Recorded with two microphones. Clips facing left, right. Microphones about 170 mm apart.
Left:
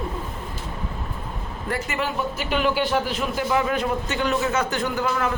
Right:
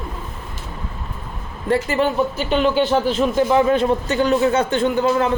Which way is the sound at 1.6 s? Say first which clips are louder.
Right 9 dB; 30° right (ahead or behind).